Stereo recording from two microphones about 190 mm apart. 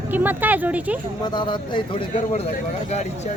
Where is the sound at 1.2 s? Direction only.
25° left (ahead or behind).